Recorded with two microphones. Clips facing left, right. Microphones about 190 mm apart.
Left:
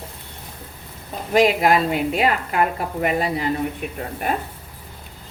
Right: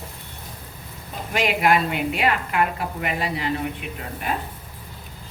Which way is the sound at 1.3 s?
35° left (ahead or behind).